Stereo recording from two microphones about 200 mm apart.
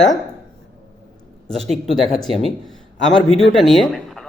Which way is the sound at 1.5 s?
Centre (ahead or behind).